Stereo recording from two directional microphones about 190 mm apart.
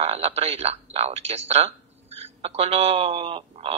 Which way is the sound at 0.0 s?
35° right (ahead or behind).